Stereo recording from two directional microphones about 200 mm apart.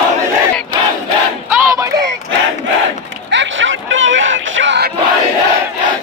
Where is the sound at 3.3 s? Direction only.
70° right (ahead or behind).